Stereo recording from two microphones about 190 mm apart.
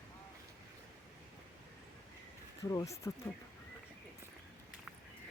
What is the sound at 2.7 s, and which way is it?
Speech, 15° left (ahead or behind).